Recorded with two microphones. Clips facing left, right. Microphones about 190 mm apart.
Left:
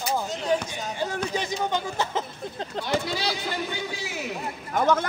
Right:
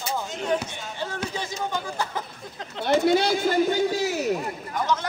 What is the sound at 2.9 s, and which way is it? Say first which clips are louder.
A man's voice: right 9 dB; 55° right (ahead or behind).